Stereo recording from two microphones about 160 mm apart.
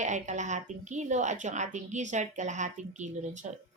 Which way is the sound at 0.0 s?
50° right (ahead or behind).